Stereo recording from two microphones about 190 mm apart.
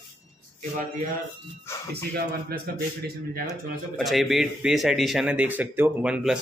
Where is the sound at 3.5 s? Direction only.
Centre (ahead or behind).